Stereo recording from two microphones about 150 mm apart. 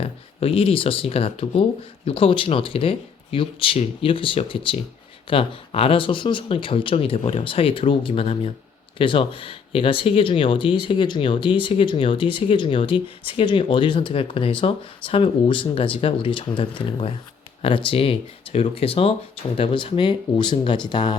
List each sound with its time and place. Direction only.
0.0 s speech: 40° left (ahead or behind)